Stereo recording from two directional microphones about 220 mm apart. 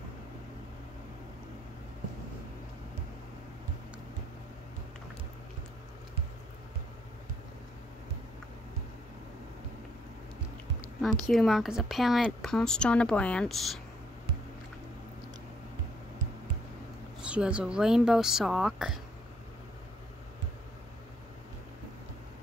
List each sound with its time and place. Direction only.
11.0 s a woman's voice: centre (ahead or behind)
17.2 s a woman's voice: 5° right (ahead or behind)